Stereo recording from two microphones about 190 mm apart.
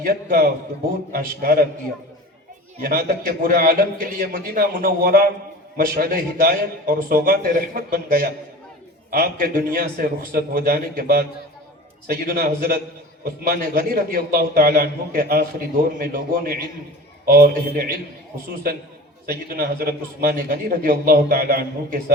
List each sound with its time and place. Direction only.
0.0 s a man's voice: 50° right (ahead or behind)
2.8 s a man's voice: 50° right (ahead or behind)
19.2 s a man's voice: 50° right (ahead or behind)